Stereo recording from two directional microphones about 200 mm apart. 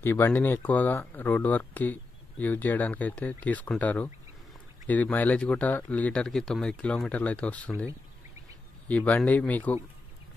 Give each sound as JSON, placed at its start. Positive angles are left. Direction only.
{"t": 0.0, "sound": "speech", "side_deg": 10}